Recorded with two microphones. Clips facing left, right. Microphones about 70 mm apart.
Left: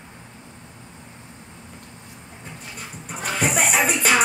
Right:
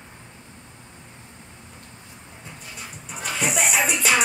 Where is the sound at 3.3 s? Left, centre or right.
Left.